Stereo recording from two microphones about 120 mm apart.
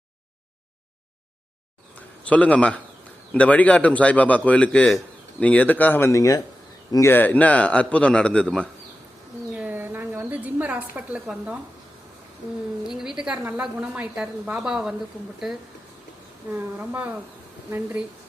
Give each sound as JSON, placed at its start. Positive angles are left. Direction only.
{"t": 2.0, "sound": "a man's voice", "side_deg": 10}
{"t": 9.6, "sound": "a sound", "side_deg": -15}
{"t": 12.8, "sound": "a woman's voice", "side_deg": -5}
{"t": 16.5, "sound": "a woman's voice", "side_deg": -15}